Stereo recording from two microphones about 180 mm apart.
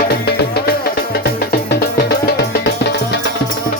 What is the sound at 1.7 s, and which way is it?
Music, 65° left (ahead or behind).